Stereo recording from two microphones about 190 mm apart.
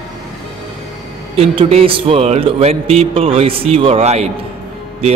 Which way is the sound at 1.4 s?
30° right (ahead or behind).